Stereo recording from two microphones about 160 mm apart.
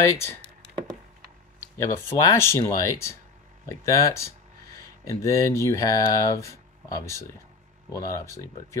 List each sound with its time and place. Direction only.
0.0 s speech: 20° left (ahead or behind)
1.8 s speech: 20° left (ahead or behind)